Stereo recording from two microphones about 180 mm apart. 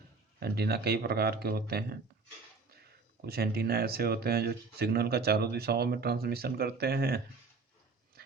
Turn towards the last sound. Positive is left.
turn(degrees=-60)  # may be behind; listen again after turning